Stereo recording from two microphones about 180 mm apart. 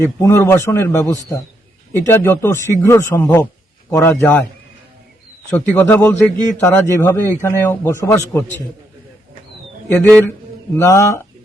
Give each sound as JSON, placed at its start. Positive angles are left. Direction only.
{"t": 0.0, "sound": "a man's voice", "side_deg": 15}
{"t": 5.5, "sound": "a man's voice", "side_deg": 10}
{"t": 10.0, "sound": "a man's voice", "side_deg": 5}